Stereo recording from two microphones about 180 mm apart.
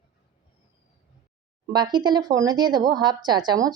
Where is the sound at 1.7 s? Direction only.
25° right (ahead or behind).